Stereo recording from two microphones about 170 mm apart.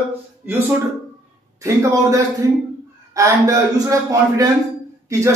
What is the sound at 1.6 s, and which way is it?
A man's voice, 20° right (ahead or behind).